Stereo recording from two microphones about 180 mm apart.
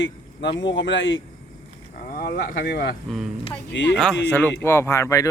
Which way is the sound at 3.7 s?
90° left.